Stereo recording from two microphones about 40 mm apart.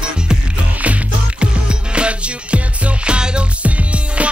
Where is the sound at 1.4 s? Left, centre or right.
Right.